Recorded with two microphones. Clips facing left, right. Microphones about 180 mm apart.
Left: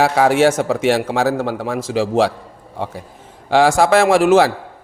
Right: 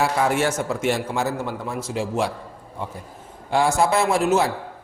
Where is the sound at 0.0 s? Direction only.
90° left.